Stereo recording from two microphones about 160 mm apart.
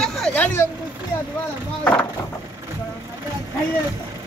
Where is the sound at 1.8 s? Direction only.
10° left (ahead or behind).